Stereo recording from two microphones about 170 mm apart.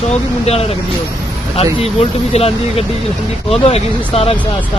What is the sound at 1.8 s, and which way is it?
Speech, 35° left (ahead or behind).